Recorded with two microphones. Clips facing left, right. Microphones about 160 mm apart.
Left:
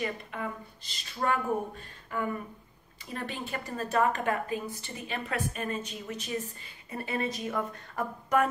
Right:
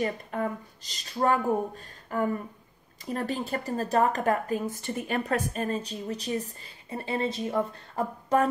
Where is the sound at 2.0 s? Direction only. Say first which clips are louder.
Right 5 dB; 40° right (ahead or behind).